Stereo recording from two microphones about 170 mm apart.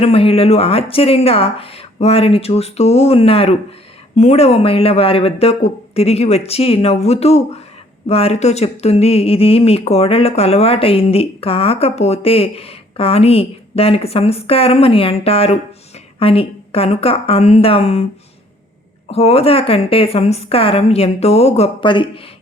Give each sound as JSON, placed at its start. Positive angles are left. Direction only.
{"t": 0.0, "sound": "speech", "side_deg": 35}
{"t": 19.1, "sound": "speech", "side_deg": 35}